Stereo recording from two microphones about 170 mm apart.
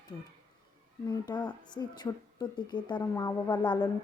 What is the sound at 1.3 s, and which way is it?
A woman's voice, 25° left (ahead or behind).